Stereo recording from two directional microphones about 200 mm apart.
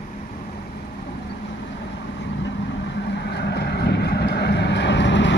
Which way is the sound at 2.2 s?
65° left (ahead or behind).